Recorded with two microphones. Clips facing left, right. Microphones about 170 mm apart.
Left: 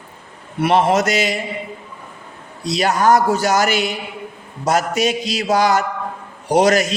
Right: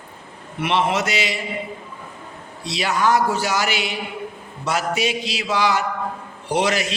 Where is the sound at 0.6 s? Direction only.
40° left (ahead or behind).